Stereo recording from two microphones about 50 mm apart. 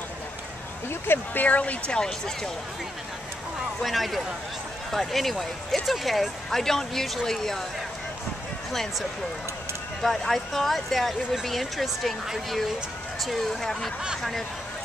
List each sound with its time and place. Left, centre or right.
0.8 s speech: left
1.4 s speech: left; by 2.5 s centre
3.8 s speech: centre
10.0 s speech: centre